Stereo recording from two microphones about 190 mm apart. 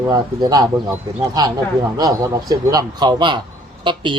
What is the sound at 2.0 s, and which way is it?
Speech, 20° right (ahead or behind).